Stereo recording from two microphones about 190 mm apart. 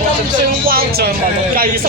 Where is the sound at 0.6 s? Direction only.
50° right (ahead or behind).